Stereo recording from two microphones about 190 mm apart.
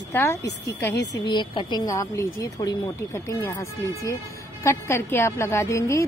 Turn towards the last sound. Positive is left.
turn(degrees=15)  # may be behind; listen again after turning